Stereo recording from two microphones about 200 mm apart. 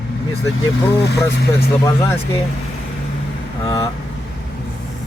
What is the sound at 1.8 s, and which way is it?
Speech, 15° left (ahead or behind).